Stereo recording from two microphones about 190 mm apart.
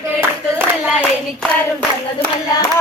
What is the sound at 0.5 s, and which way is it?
Speech, 5° right (ahead or behind).